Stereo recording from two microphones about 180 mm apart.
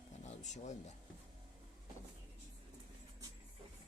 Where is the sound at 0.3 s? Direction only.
40° left (ahead or behind).